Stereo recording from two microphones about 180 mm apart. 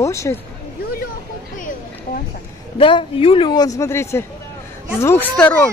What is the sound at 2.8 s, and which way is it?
A man's voice, 30° left (ahead or behind).